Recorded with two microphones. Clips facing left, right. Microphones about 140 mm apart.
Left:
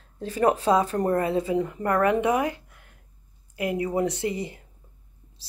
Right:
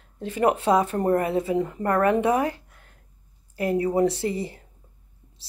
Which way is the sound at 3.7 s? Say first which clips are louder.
Right 5 dB; 35° right (ahead or behind).